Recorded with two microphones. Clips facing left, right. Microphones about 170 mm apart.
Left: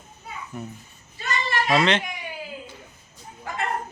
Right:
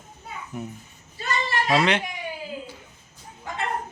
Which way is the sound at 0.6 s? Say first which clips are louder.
Right 1 dB; 20° right (ahead or behind).